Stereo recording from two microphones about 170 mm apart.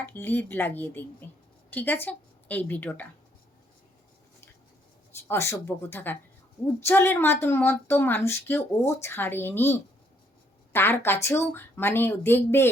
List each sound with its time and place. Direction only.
0.0 s speech: 10° left (ahead or behind)
5.1 s speech: 15° left (ahead or behind)